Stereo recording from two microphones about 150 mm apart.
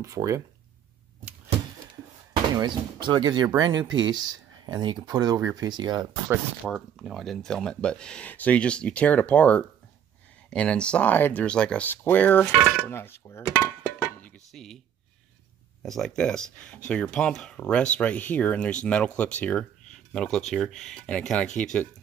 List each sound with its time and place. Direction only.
0.0 s speech: 20° right (ahead or behind)
2.5 s speech: 30° right (ahead or behind)
6.2 s speech: 5° right (ahead or behind); by 12.4 s 10° left (ahead or behind)
12.8 s a sound: 15° left (ahead or behind)
15.8 s speech: centre (ahead or behind)